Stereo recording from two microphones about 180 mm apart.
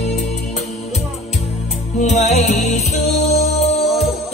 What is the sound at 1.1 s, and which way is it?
Music, 35° left (ahead or behind).